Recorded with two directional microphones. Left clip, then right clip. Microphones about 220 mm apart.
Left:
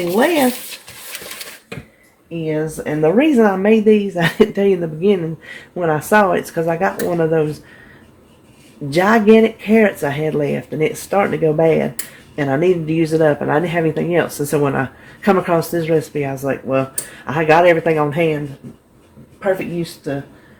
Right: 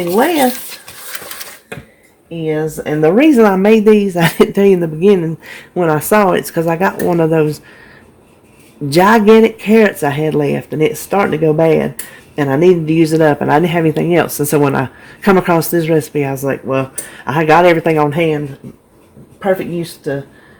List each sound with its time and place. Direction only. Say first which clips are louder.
2.4 s speech: right 4 dB; 40° right (ahead or behind)
8.9 s a man's voice: right 4 dB; 45° right (ahead or behind)